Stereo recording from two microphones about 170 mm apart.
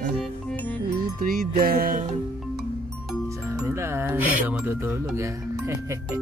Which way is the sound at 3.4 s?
15° right (ahead or behind).